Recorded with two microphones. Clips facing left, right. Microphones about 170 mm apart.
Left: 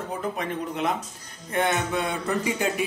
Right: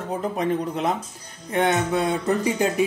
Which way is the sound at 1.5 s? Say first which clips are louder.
Right 4 dB; 30° right (ahead or behind).